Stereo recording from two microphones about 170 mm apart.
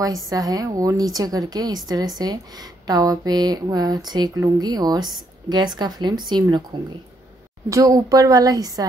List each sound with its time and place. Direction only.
0.0 s speech: 20° right (ahead or behind)
7.7 s speech: 20° right (ahead or behind)